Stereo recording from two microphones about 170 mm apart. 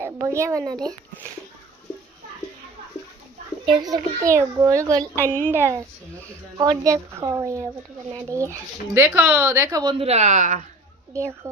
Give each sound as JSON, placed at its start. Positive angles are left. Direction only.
{"t": 0.0, "sound": "speech", "side_deg": -15}
{"t": 3.7, "sound": "a child's voice", "side_deg": -20}
{"t": 10.0, "sound": "speech", "side_deg": -40}